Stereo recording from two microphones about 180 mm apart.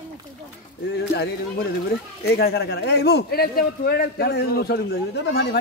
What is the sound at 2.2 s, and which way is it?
A man's voice, 60° left (ahead or behind).